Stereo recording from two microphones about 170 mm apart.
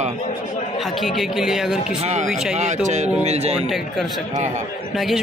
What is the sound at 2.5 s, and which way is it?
Speech, 45° right (ahead or behind).